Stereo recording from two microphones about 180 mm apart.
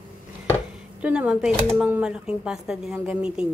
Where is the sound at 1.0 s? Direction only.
5° right (ahead or behind).